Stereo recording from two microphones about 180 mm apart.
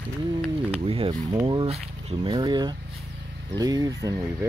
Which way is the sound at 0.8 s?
30° right (ahead or behind).